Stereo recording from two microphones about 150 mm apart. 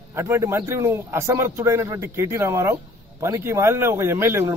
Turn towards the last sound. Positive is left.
turn(degrees=-15)  # may be behind; listen again after turning